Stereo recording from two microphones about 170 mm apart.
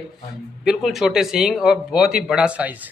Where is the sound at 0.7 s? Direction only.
Centre (ahead or behind).